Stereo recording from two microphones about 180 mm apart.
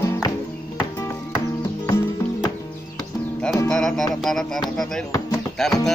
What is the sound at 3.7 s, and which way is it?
Music, centre (ahead or behind).